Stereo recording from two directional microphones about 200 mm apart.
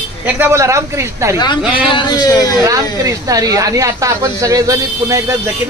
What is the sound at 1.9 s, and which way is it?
Speech, 20° left (ahead or behind).